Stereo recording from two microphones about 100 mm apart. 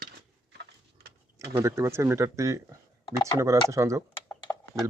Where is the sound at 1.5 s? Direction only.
30° right (ahead or behind).